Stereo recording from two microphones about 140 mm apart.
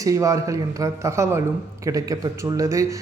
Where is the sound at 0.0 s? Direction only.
25° right (ahead or behind).